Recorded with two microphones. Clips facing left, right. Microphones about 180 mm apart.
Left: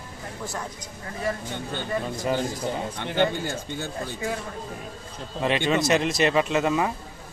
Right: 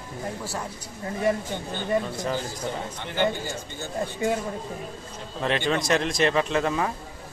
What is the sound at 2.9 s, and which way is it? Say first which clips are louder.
Speech: left 1 dB; 60° left (ahead or behind).